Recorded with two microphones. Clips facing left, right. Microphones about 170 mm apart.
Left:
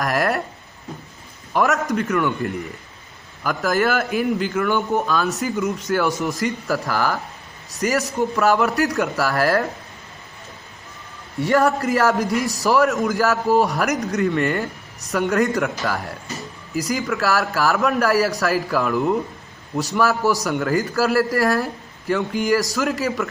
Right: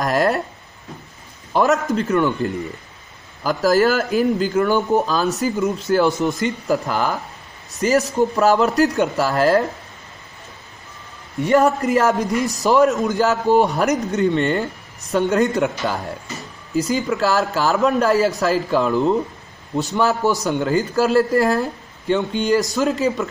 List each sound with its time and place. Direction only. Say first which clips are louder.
0.0 s a man's voice: right 3 dB; 25° right (ahead or behind)
1.5 s a man's voice: right 2 dB; 30° right (ahead or behind)
6.2 s a man's voice: right 3 dB; 20° right (ahead or behind)
11.3 s a man's voice: right 2 dB; 20° right (ahead or behind)